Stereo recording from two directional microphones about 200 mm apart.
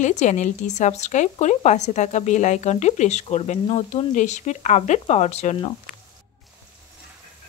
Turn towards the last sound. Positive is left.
turn(degrees=35)  # may be behind; listen again after turning